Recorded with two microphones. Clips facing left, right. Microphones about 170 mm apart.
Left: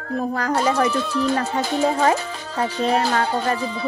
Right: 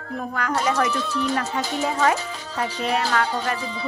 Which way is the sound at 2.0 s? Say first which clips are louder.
Left 2 dB; 30° left (ahead or behind).